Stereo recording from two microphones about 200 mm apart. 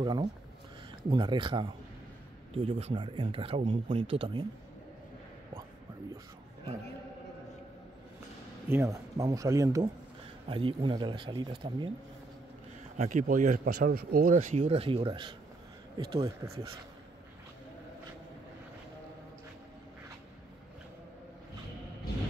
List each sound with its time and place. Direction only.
0.0 s speech: 20° right (ahead or behind)
8.6 s speech: 15° right (ahead or behind)
12.9 s speech: 35° right (ahead or behind)